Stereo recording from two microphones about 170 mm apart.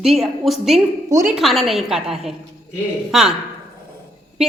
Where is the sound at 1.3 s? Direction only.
Centre (ahead or behind).